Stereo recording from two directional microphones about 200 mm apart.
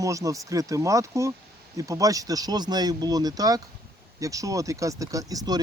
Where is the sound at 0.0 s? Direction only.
15° right (ahead or behind).